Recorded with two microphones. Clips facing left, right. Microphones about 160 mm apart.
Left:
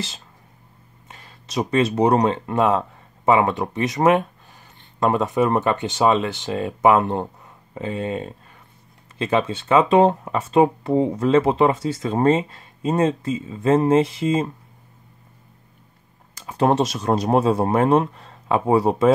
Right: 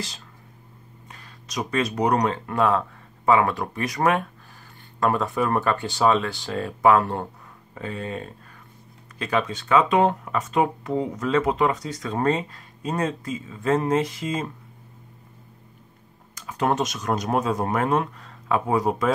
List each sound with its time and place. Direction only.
1.1 s a sound: 25° left (ahead or behind)
2.0 s speech: 25° left (ahead or behind)
16.3 s speech: 30° left (ahead or behind)